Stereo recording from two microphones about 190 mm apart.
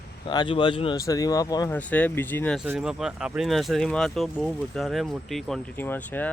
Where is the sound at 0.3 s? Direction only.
25° left (ahead or behind).